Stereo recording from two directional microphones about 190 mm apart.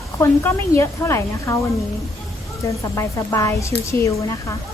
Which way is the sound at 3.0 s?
15° left (ahead or behind).